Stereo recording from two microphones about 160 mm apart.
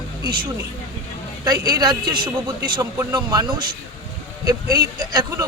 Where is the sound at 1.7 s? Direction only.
25° right (ahead or behind).